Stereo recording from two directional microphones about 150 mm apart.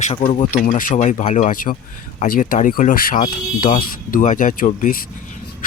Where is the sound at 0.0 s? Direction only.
40° left (ahead or behind).